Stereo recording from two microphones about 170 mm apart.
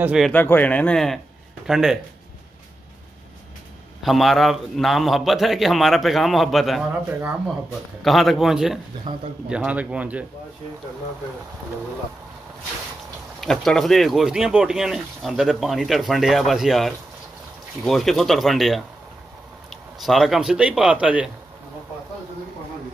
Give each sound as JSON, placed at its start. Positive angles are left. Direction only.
{"t": 0.0, "sound": "speech", "side_deg": -5}
{"t": 0.3, "sound": "speech", "side_deg": 10}
{"t": 4.0, "sound": "speech", "side_deg": 0}
{"t": 9.1, "sound": "speech", "side_deg": -25}
{"t": 9.5, "sound": "a man's voice", "side_deg": -5}
{"t": 13.4, "sound": "speech", "side_deg": 0}